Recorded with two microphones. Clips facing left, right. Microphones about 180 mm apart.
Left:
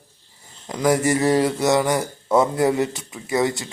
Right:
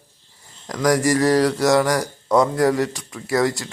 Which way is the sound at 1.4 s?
Centre (ahead or behind).